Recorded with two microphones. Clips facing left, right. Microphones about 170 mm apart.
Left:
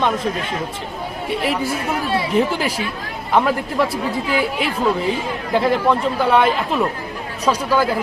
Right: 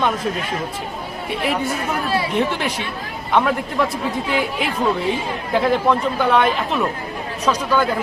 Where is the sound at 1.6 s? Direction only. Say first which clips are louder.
Left 1 dB; 25° left (ahead or behind).